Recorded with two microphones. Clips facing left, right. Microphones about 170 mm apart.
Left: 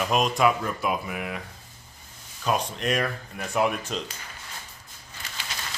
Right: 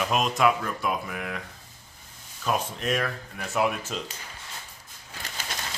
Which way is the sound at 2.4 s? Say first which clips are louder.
Left 2 dB; centre (ahead or behind).